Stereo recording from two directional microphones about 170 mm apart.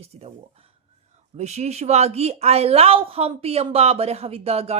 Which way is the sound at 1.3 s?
40° right (ahead or behind).